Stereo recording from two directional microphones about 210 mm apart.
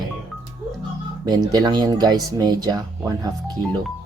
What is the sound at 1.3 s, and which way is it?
Speech, 20° right (ahead or behind).